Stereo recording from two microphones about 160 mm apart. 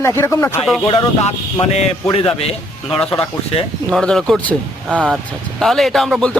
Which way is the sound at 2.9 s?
5° left (ahead or behind).